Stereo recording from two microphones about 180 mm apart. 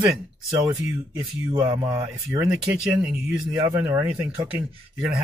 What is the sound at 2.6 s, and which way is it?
Speech, 5° right (ahead or behind).